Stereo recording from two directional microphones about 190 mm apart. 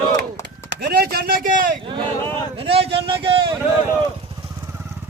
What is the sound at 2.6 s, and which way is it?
Speech, 30° right (ahead or behind).